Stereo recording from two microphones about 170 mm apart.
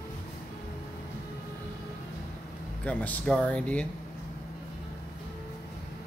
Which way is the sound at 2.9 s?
10° left (ahead or behind).